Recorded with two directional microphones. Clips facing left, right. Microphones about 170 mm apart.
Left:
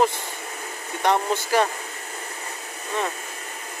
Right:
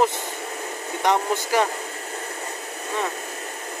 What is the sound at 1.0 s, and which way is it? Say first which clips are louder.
Speech: even; 15° right (ahead or behind).